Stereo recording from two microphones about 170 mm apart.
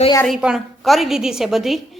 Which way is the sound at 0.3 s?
Centre (ahead or behind).